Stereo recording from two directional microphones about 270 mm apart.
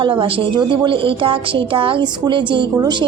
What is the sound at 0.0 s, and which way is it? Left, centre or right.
A woman's voice, centre.